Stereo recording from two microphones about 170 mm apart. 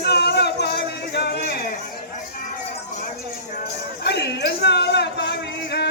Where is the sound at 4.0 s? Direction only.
80° left.